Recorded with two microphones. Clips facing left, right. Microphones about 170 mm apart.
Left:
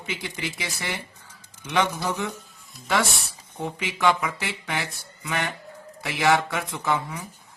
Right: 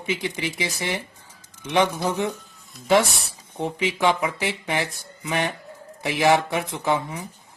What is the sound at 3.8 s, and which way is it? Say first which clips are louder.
Speech: right 1 dB; 20° right (ahead or behind).